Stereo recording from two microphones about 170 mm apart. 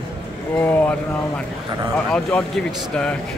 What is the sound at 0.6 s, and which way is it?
Speech, 10° left (ahead or behind).